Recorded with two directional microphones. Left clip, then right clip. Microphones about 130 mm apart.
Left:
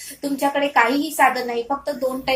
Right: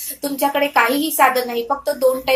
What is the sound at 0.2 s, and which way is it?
A woman's voice, 30° right (ahead or behind).